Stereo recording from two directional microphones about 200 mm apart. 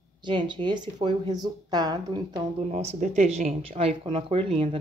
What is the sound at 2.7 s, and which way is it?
Speech, 35° right (ahead or behind).